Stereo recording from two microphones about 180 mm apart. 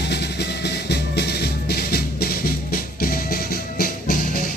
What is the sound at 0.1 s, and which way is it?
Music, 70° left (ahead or behind).